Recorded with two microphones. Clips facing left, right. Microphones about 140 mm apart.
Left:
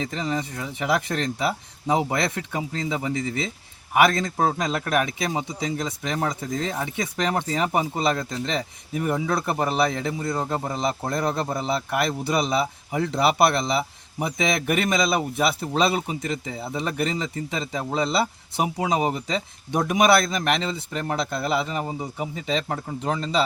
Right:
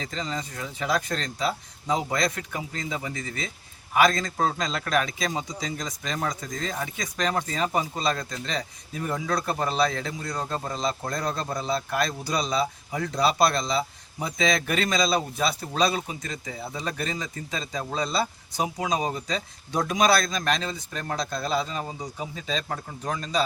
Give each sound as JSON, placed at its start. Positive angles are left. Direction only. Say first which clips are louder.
{"t": 0.0, "sound": "a man's voice", "louder": "left 5 dB", "side_deg": 20}